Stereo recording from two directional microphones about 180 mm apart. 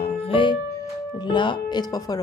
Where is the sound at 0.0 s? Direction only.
35° left (ahead or behind).